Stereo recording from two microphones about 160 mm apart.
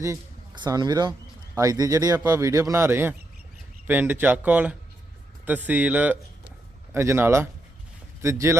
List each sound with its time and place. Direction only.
0.0 s a man's voice: 25° right (ahead or behind)